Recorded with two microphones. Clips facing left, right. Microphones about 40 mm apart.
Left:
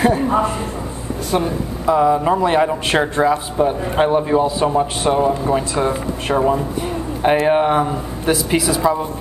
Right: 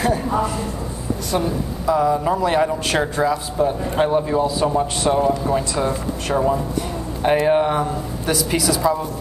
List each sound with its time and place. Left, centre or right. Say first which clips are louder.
0.0 s a man's voice: left 4 dB; left